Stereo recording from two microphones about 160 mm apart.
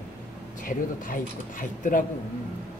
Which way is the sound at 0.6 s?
55° left (ahead or behind).